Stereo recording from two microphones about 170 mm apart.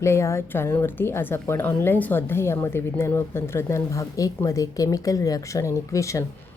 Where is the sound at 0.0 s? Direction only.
15° left (ahead or behind).